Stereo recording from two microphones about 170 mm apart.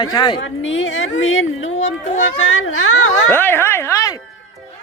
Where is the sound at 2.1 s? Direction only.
45° left (ahead or behind).